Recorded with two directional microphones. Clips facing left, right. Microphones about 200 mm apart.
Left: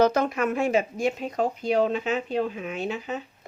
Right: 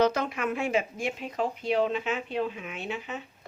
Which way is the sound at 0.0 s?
45° left (ahead or behind).